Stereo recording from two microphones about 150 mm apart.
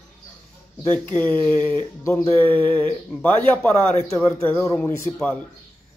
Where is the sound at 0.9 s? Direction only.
10° left (ahead or behind).